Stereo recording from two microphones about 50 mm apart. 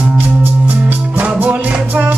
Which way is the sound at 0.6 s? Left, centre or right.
Right.